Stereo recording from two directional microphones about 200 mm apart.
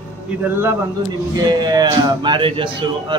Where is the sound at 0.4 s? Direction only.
10° right (ahead or behind).